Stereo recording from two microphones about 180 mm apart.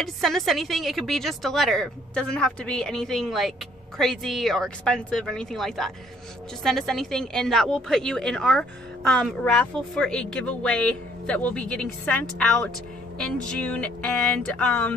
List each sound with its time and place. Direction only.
0.0 s a woman's voice: centre (ahead or behind)